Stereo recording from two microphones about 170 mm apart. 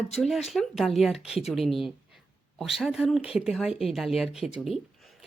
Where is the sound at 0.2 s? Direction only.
Centre (ahead or behind).